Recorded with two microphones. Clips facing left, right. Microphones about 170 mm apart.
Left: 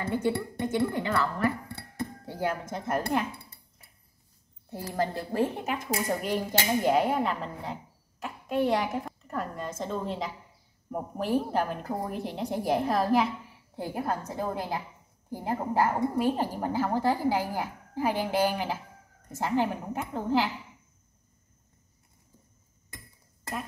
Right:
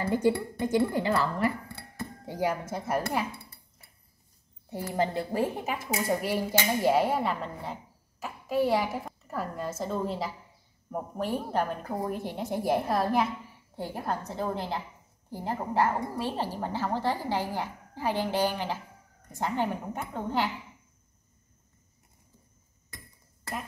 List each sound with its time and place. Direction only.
0.6 s a woman's voice: 35° right (ahead or behind)
2.2 s speech: 15° right (ahead or behind)
4.9 s a woman's voice: 15° right (ahead or behind); by 20.4 s 5° left (ahead or behind)